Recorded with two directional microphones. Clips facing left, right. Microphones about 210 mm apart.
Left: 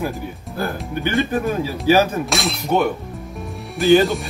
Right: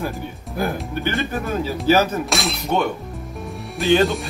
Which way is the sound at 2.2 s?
Centre (ahead or behind).